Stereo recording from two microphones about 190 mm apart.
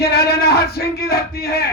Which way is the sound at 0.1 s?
55° left (ahead or behind).